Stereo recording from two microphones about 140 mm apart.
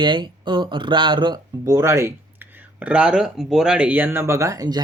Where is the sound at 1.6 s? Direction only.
20° right (ahead or behind).